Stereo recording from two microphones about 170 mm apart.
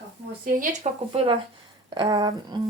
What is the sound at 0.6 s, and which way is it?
Speech, 45° right (ahead or behind).